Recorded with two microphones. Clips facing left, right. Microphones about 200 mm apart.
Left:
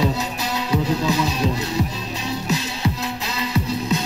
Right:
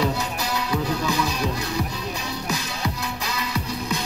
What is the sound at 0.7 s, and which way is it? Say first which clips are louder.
Music: left 5 dB; 20° left (ahead or behind).